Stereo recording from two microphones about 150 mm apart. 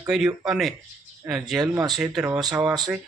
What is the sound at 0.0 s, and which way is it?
Speech, 5° right (ahead or behind).